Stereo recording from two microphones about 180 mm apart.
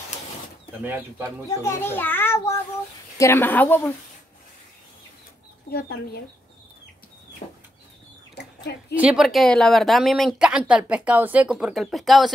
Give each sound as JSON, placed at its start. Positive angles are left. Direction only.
{"t": 0.8, "sound": "speech", "side_deg": -10}
{"t": 1.6, "sound": "a child's voice", "side_deg": 15}
{"t": 5.7, "sound": "speech", "side_deg": 60}
{"t": 8.4, "sound": "a sound", "side_deg": 65}
{"t": 8.9, "sound": "speech", "side_deg": -5}